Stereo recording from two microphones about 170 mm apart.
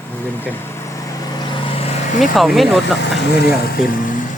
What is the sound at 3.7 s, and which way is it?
Speech, 55° left (ahead or behind).